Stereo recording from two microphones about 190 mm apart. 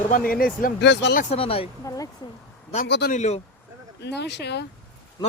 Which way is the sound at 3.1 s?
40° left (ahead or behind).